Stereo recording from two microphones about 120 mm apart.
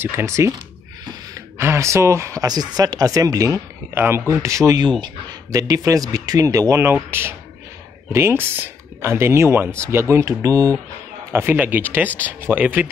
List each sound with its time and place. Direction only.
0.0 s speech: 20° right (ahead or behind)
1.6 s speech: 25° right (ahead or behind)
11.3 s speech: 15° right (ahead or behind)